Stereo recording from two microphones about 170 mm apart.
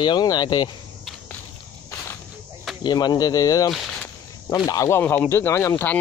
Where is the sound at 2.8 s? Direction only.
25° left (ahead or behind).